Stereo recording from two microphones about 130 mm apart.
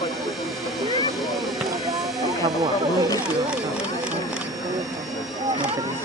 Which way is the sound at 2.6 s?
30° right (ahead or behind).